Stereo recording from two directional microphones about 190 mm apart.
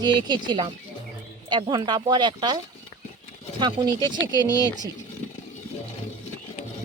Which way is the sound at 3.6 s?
25° right (ahead or behind).